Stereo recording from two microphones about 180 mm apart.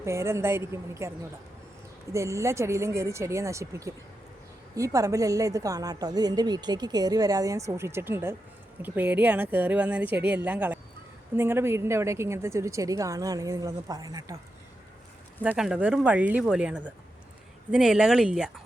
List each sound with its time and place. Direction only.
0.0 s a woman's voice: 15° right (ahead or behind)
2.1 s a woman's voice: 15° right (ahead or behind)
15.4 s a woman's voice: 5° right (ahead or behind)